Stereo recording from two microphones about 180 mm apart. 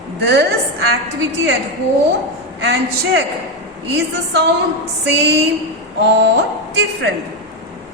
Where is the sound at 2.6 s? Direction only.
80° right.